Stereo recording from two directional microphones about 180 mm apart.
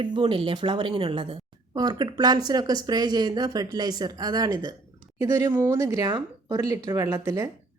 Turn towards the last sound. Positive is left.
turn(degrees=-20)  # may be behind; listen again after turning